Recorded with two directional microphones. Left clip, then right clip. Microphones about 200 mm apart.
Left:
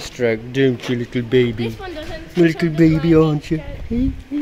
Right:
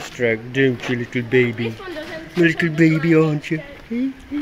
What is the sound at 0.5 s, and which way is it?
Speech, 25° left (ahead or behind).